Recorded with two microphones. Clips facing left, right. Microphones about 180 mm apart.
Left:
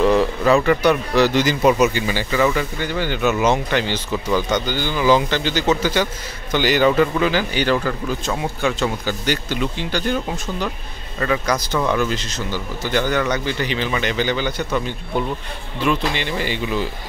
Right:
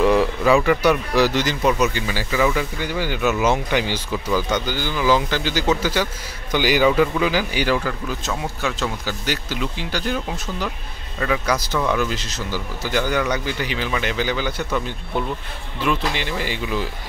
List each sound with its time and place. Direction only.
0.0 s a man's voice: 5° right (ahead or behind)